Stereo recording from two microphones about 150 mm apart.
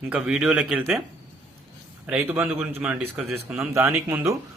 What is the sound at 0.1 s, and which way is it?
Speech, 5° right (ahead or behind).